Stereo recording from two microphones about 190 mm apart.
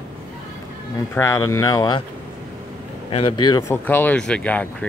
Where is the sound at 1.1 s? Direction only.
15° left (ahead or behind).